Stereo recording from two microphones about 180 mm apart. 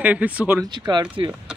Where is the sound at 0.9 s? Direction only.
25° right (ahead or behind).